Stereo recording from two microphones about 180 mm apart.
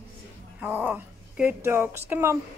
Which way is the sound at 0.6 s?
10° right (ahead or behind).